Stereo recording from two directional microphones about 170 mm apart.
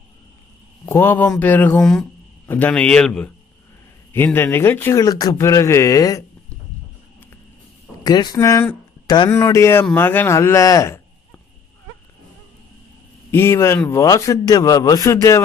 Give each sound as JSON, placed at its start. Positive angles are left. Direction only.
{"t": 0.8, "sound": "speech", "side_deg": 15}
{"t": 8.0, "sound": "speech", "side_deg": 25}
{"t": 13.3, "sound": "a man's voice", "side_deg": 15}